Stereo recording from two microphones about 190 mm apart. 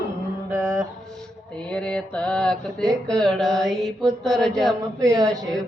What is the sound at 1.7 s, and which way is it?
Mantra, 5° left (ahead or behind).